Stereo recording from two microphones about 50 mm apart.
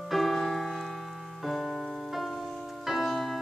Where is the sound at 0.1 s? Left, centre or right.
Centre.